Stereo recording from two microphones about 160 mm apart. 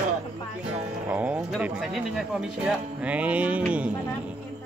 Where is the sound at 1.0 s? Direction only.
10° right (ahead or behind).